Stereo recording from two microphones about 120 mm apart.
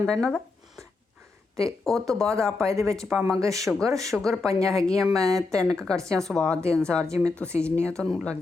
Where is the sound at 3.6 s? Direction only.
5° left (ahead or behind).